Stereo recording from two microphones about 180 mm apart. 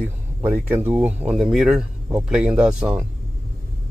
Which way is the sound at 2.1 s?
15° right (ahead or behind).